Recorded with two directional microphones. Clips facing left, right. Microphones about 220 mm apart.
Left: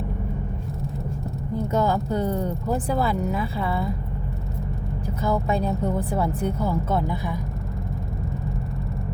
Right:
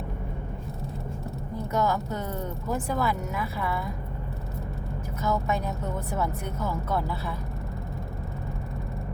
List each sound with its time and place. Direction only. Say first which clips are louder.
1.7 s speech: left 4 dB; 30° left (ahead or behind)
5.2 s speech: left 4 dB; 30° left (ahead or behind)